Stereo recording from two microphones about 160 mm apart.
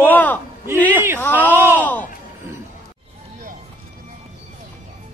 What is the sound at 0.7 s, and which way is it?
Speech, 10° left (ahead or behind).